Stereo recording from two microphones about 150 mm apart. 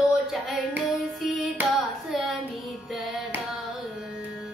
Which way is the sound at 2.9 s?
Centre (ahead or behind).